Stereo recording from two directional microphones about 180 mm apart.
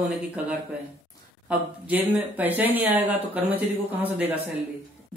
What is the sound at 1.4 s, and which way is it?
Speech, 10° right (ahead or behind).